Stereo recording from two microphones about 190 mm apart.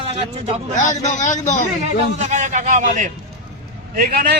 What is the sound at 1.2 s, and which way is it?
Speech, 40° left (ahead or behind).